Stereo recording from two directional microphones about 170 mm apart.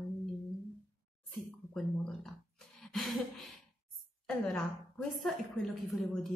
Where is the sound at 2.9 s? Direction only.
Centre (ahead or behind).